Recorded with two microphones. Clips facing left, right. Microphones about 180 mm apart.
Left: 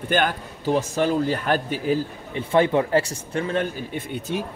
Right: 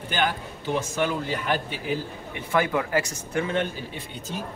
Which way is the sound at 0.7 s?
40° left (ahead or behind).